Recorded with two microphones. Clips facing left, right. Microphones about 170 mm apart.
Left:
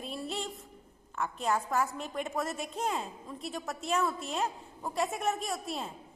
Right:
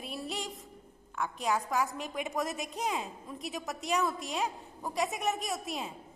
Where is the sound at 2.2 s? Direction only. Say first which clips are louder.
Even; centre (ahead or behind).